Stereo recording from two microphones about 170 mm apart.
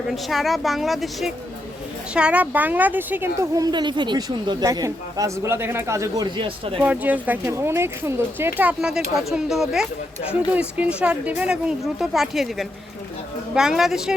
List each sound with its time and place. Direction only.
0.1 s a woman's voice: centre (ahead or behind); by 6.7 s 30° right (ahead or behind)
6.8 s a woman's voice: 10° right (ahead or behind)